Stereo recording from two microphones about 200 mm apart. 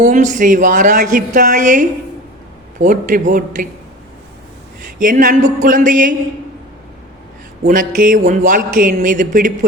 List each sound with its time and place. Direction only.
0.1 s a man's voice: 40° right (ahead or behind)
2.8 s a man's voice: 40° right (ahead or behind)
4.9 s a man's voice: 45° right (ahead or behind)
7.6 s a man's voice: 45° right (ahead or behind)